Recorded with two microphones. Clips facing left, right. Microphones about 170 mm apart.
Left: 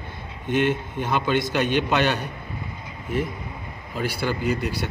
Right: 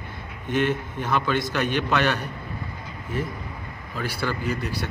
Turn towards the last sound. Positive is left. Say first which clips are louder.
# left 3 dB
turn(degrees=20)  # may be behind; listen again after turning